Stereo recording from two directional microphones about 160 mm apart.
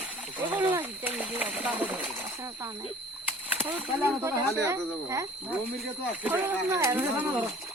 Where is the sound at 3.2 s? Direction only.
10° right (ahead or behind).